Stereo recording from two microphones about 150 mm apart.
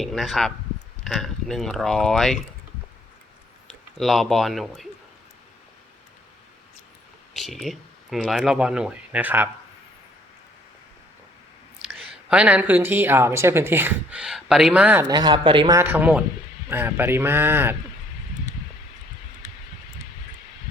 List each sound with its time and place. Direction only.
0.0 s speech: centre (ahead or behind)
4.0 s speech: centre (ahead or behind)
7.3 s speech: centre (ahead or behind)
12.3 s speech: 10° right (ahead or behind)
15.0 s speech: 25° right (ahead or behind)
15.8 s speech: 15° right (ahead or behind)